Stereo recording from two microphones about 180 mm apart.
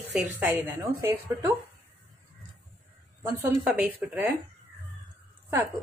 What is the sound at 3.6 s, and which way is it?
Speech, 5° right (ahead or behind).